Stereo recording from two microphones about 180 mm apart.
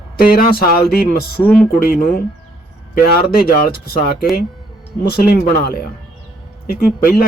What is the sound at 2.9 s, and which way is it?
Speech, 55° left (ahead or behind).